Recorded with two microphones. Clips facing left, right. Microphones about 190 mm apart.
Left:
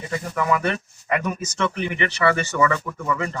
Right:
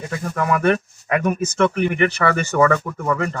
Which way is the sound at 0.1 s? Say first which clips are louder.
Right 1 dB; 55° right (ahead or behind).